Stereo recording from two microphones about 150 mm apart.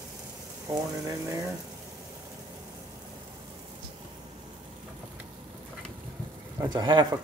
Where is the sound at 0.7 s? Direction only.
20° right (ahead or behind).